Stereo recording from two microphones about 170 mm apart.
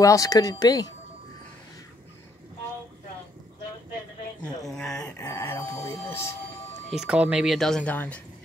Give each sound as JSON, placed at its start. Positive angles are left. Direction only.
{"t": 0.0, "sound": "speech", "side_deg": 20}
{"t": 4.4, "sound": "a sound", "side_deg": 5}
{"t": 6.9, "sound": "speech", "side_deg": -5}